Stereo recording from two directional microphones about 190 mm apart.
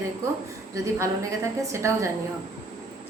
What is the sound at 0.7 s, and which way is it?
A woman's voice, 15° right (ahead or behind).